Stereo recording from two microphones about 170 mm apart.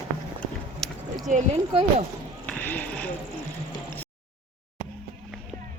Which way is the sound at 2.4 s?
10° left (ahead or behind).